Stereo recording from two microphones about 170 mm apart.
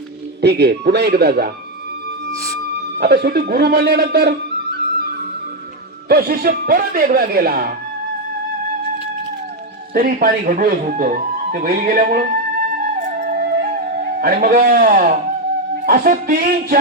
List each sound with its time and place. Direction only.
0.4 s a man's voice: 75° right (ahead or behind)
3.0 s a man's voice: 70° right (ahead or behind)
6.1 s speech: 65° right (ahead or behind)
9.9 s speech: 60° right (ahead or behind)
13.1 s flute: 55° right (ahead or behind)
14.2 s speech: 60° right (ahead or behind)